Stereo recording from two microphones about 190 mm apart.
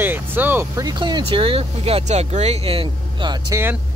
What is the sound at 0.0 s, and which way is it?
Speech, 10° right (ahead or behind).